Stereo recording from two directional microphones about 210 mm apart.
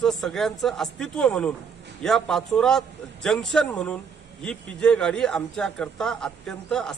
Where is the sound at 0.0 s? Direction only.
Centre (ahead or behind).